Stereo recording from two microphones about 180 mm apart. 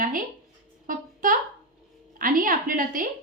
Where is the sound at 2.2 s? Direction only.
50° right (ahead or behind).